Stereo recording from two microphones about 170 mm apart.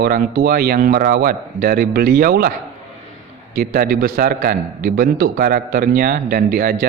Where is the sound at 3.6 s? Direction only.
60° right (ahead or behind).